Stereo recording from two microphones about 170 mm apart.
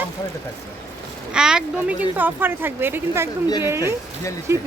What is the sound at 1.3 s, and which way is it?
Speech, 5° right (ahead or behind).